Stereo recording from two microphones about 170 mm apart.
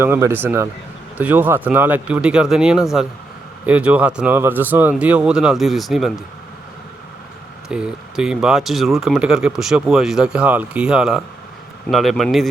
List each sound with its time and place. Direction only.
0.0 s speech: 15° right (ahead or behind)
7.7 s speech: 5° right (ahead or behind)